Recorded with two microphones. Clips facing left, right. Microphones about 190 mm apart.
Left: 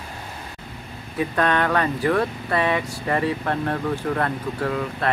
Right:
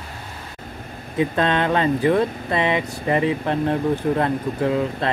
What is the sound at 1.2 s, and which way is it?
Speech, 20° right (ahead or behind).